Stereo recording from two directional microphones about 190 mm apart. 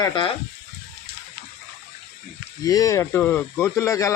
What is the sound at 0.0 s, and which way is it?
Speech, 25° left (ahead or behind).